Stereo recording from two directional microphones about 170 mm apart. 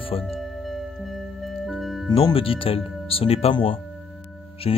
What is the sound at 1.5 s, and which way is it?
Music, centre (ahead or behind).